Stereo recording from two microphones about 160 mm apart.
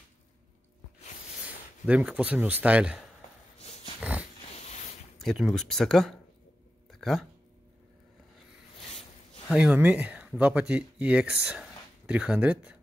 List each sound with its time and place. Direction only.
1.9 s speech: 10° right (ahead or behind)
3.5 s dog: 40° left (ahead or behind)
4.0 s dog: 10° right (ahead or behind)
4.6 s a sound: 45° left (ahead or behind)
5.2 s speech: centre (ahead or behind)
6.9 s a sound: centre (ahead or behind)
9.5 s speech: 5° right (ahead or behind)